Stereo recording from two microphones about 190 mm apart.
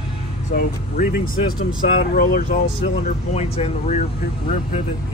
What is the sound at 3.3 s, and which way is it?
Speech, 35° left (ahead or behind).